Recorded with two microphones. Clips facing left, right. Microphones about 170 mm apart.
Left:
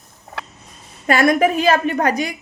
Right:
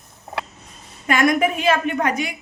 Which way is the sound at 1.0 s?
35° left (ahead or behind).